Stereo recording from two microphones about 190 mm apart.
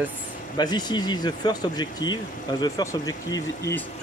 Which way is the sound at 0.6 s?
20° left (ahead or behind).